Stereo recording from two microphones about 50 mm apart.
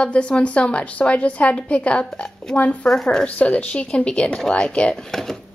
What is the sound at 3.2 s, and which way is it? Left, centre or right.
Speech, left.